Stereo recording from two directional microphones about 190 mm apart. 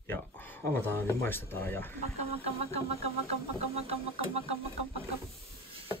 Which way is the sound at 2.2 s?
30° right (ahead or behind).